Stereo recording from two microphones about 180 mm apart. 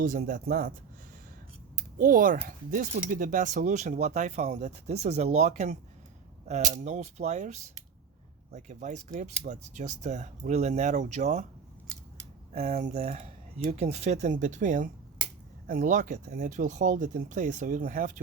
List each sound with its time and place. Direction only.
0.0 s speech: 50° right (ahead or behind)
2.0 s speech: 50° right (ahead or behind)
12.5 s speech: 40° right (ahead or behind)